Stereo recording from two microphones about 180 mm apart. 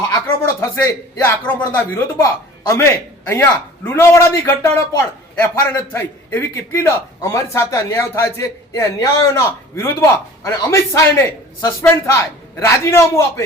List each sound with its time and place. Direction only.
0.0 s speech: 15° left (ahead or behind)